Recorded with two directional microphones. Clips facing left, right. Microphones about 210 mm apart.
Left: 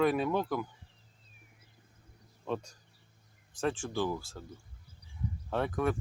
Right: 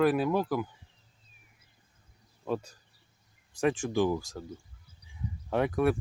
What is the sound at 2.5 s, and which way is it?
Speech, 5° right (ahead or behind).